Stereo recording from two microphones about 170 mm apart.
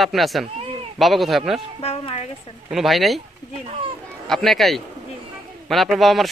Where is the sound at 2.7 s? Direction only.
Centre (ahead or behind).